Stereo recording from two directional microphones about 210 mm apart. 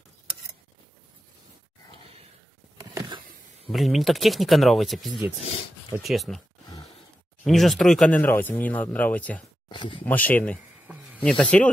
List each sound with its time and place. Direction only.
2.8 s a sound: 15° right (ahead or behind)
3.7 s speech: centre (ahead or behind)
7.4 s speech: centre (ahead or behind)
9.7 s speech: 20° left (ahead or behind)
10.0 s speech: 10° left (ahead or behind)